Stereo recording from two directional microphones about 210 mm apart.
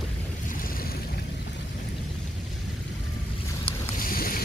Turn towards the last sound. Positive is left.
turn(degrees=45)  # may be behind; listen again after turning